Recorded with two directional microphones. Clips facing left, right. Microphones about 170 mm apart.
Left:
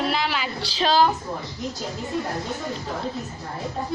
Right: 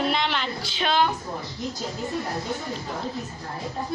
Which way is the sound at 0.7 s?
35° left (ahead or behind).